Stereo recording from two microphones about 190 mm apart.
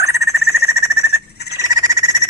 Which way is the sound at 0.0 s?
15° right (ahead or behind).